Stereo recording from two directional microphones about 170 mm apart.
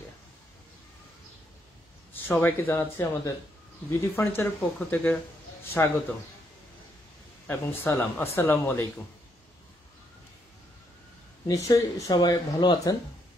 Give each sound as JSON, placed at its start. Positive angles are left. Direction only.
{"t": 2.1, "sound": "speech", "side_deg": 10}
{"t": 7.8, "sound": "speech", "side_deg": 15}
{"t": 11.4, "sound": "speech", "side_deg": 20}